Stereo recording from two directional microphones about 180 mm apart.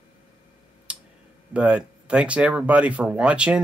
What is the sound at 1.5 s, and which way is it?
Speech, 5° right (ahead or behind).